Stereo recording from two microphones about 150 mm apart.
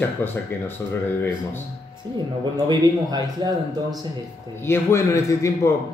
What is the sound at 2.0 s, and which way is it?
A man's voice, 30° right (ahead or behind).